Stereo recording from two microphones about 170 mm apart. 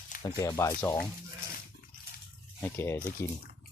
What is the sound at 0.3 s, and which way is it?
Speech, 20° left (ahead or behind).